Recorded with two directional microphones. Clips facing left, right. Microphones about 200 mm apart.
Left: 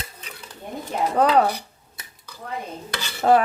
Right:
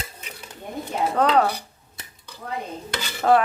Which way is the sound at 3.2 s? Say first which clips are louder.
Left 1 dB; 20° left (ahead or behind).